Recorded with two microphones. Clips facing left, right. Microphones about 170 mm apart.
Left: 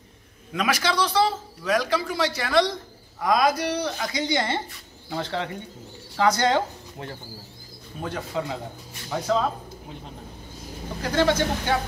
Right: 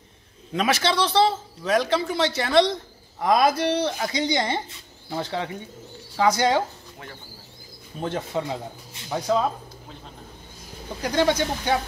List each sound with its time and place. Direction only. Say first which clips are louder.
0.5 s speech: right 2 dB; 25° right (ahead or behind); by 6.6 s 10° right (ahead or behind)
8.0 s speech: right 2 dB; 25° right (ahead or behind)
11.0 s speech: even; 15° right (ahead or behind)